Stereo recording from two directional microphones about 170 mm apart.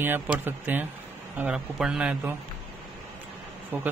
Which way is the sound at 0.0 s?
10° right (ahead or behind).